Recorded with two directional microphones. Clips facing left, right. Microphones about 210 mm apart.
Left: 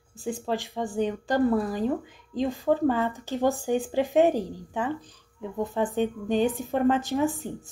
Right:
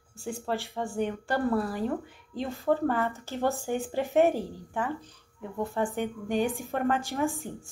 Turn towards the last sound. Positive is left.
turn(degrees=20)  # may be behind; listen again after turning